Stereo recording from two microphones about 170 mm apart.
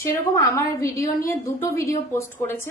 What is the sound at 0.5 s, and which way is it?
A woman's voice, 15° left (ahead or behind).